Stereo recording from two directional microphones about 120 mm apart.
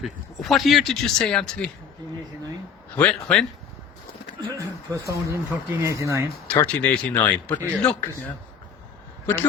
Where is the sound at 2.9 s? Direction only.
10° left (ahead or behind).